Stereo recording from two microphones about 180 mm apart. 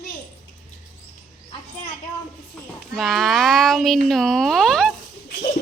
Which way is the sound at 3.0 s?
Centre (ahead or behind).